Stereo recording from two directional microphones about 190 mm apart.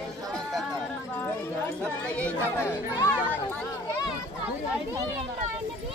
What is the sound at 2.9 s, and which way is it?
Speech, 20° left (ahead or behind).